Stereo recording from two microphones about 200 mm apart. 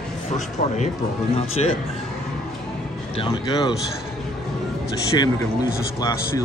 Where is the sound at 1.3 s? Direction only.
30° left (ahead or behind).